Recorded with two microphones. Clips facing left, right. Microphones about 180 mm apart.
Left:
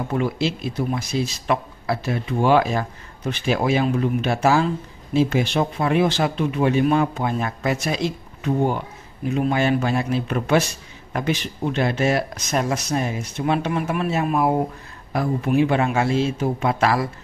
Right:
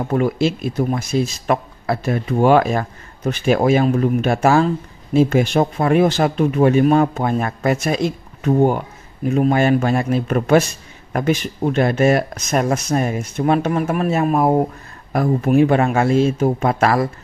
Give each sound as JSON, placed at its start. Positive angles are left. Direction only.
{"t": 0.1, "sound": "speech", "side_deg": -50}